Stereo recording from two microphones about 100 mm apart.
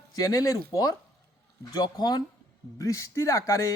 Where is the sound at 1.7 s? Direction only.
45° left (ahead or behind).